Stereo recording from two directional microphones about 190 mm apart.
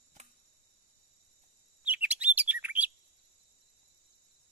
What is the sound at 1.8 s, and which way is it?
Chirp, 5° right (ahead or behind).